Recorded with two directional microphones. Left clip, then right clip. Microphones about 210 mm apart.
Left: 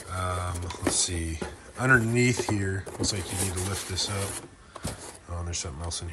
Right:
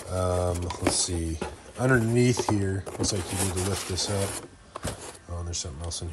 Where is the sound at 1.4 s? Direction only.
Centre (ahead or behind).